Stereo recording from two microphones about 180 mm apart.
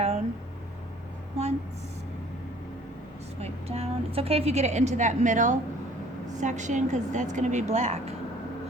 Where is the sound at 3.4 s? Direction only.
35° right (ahead or behind).